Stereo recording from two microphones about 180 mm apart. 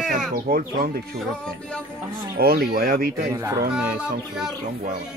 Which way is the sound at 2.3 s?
55° right (ahead or behind).